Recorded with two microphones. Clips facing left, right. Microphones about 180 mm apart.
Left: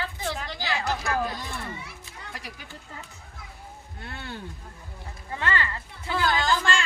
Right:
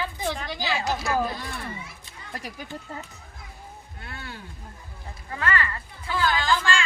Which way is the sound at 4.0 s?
30° left (ahead or behind).